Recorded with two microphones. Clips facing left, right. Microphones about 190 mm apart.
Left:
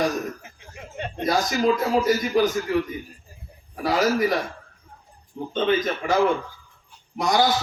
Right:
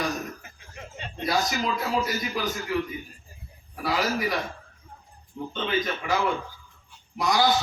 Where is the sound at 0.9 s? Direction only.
55° left (ahead or behind).